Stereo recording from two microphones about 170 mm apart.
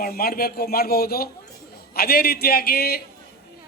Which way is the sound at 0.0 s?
65° left (ahead or behind).